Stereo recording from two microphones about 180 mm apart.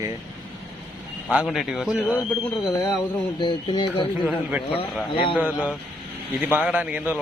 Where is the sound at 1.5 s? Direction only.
Centre (ahead or behind).